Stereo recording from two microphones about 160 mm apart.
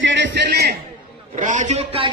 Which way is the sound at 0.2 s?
90° right.